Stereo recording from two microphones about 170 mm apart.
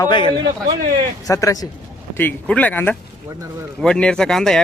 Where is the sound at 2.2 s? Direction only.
10° left (ahead or behind).